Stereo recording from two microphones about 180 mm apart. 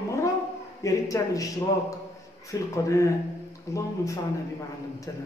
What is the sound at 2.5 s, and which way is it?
A man's voice, 15° left (ahead or behind).